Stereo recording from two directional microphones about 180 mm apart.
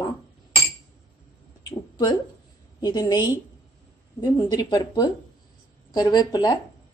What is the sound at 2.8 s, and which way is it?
Speech, 20° left (ahead or behind).